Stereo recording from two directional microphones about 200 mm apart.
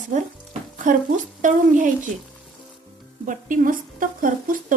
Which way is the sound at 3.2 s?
40° right (ahead or behind).